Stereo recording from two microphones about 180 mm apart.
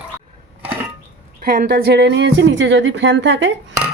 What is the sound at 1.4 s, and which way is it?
A woman's voice, 50° right (ahead or behind).